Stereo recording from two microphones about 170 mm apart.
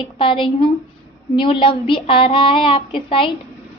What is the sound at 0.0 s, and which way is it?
A woman's voice, 30° left (ahead or behind).